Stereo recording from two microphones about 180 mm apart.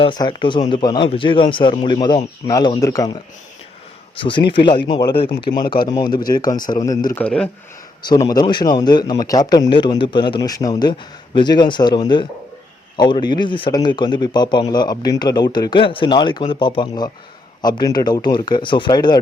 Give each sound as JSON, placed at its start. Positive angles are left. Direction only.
{"t": 0.0, "sound": "a man's voice", "side_deg": 25}
{"t": 4.2, "sound": "a man's voice", "side_deg": 25}
{"t": 7.2, "sound": "speech", "side_deg": 5}
{"t": 8.3, "sound": "a man's voice", "side_deg": 25}